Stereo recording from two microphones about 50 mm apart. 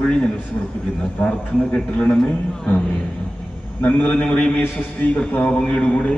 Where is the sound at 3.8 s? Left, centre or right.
Left.